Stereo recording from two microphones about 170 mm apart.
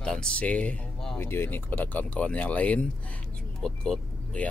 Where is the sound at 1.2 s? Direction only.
15° left (ahead or behind).